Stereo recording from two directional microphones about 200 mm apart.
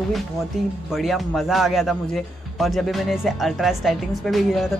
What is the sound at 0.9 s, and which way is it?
Speech, centre (ahead or behind).